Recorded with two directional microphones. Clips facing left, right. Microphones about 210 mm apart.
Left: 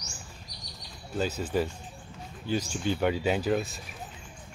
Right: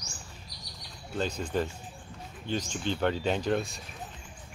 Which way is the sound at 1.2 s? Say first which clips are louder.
Left 2 dB; 5° left (ahead or behind).